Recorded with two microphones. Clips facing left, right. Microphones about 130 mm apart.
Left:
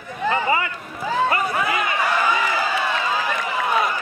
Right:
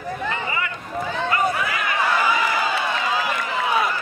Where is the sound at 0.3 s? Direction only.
35° left (ahead or behind).